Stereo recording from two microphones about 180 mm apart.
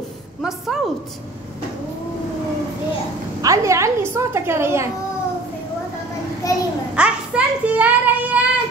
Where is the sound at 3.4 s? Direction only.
15° right (ahead or behind).